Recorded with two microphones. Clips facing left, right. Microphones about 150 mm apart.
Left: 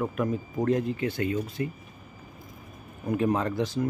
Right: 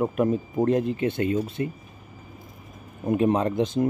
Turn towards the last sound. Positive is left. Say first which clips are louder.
# right 4 dB
turn(degrees=-20)  # may be behind; listen again after turning